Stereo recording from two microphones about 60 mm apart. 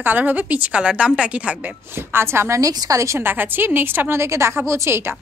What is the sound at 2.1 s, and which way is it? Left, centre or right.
Speech, right.